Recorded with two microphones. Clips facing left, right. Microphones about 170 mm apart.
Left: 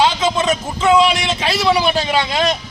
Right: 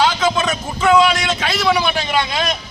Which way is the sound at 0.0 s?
25° left (ahead or behind).